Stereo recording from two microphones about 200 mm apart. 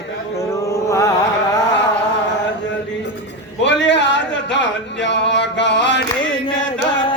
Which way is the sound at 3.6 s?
65° left (ahead or behind).